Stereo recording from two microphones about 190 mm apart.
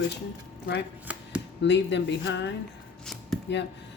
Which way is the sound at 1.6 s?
65° left (ahead or behind).